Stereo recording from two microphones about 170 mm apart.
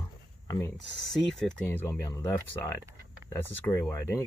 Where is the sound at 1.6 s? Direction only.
15° left (ahead or behind).